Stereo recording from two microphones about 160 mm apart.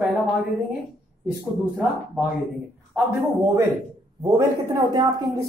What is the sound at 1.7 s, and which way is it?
Speech, 10° right (ahead or behind).